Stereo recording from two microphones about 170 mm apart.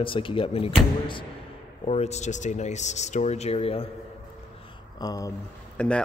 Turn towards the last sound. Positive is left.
turn(degrees=5)  # may be behind; listen again after turning